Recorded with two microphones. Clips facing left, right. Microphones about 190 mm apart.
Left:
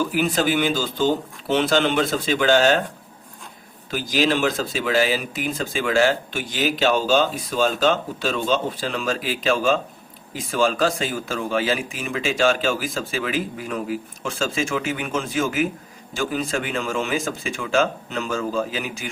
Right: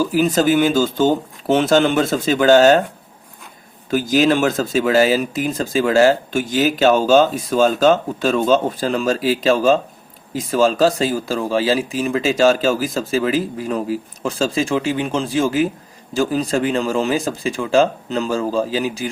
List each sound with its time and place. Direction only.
0.0 s speech: 40° right (ahead or behind)
3.9 s speech: 45° right (ahead or behind)